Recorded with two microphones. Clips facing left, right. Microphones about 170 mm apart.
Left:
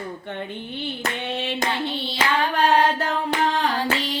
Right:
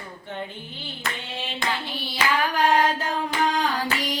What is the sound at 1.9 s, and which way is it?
Hands, 25° left (ahead or behind).